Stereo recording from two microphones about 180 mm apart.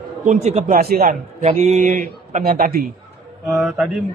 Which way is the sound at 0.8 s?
55° right (ahead or behind).